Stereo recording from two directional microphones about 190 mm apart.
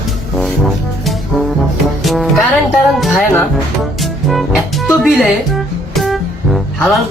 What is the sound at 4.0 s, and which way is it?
Music, centre (ahead or behind).